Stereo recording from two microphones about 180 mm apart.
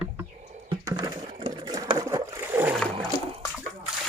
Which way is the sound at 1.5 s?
25° right (ahead or behind).